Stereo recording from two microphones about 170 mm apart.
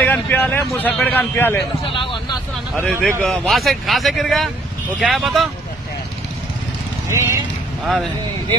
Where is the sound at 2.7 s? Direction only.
5° left (ahead or behind).